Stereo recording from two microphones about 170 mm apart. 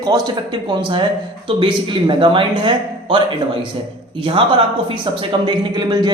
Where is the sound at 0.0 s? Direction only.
25° right (ahead or behind).